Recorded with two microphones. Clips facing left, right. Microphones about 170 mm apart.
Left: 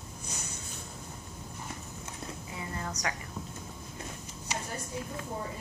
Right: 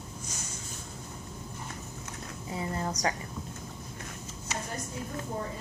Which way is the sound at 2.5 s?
30° right (ahead or behind).